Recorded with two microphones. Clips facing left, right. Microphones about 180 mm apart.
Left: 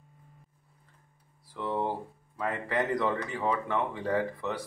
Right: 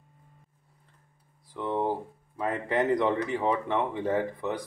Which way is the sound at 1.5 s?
20° right (ahead or behind).